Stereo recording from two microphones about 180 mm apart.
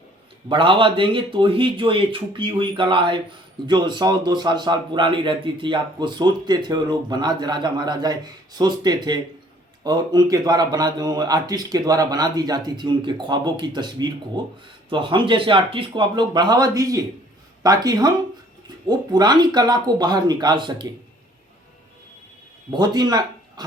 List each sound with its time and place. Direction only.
0.4 s a man's voice: 30° right (ahead or behind)
22.7 s speech: 25° right (ahead or behind)